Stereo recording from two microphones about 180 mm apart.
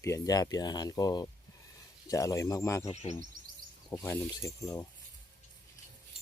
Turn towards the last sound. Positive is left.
turn(degrees=20)  # may be behind; listen again after turning